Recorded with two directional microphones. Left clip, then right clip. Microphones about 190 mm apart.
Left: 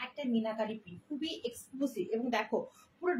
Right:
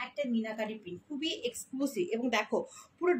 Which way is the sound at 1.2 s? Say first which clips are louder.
Right 4 dB; 35° right (ahead or behind).